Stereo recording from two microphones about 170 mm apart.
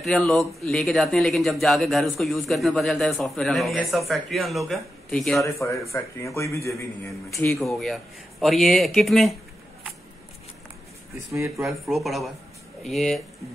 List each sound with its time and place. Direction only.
0.0 s speech: 5° left (ahead or behind)
5.4 s a man's voice: 20° left (ahead or behind)
7.5 s speech: centre (ahead or behind)
11.3 s speech: 15° right (ahead or behind)
11.6 s speech: centre (ahead or behind)